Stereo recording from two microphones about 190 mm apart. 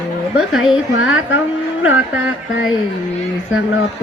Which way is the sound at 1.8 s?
10° right (ahead or behind).